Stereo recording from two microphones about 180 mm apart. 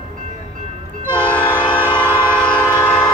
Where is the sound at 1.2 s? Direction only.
10° left (ahead or behind).